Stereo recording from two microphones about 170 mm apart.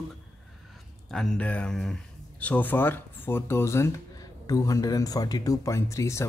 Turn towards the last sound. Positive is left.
turn(degrees=15)  # may be behind; listen again after turning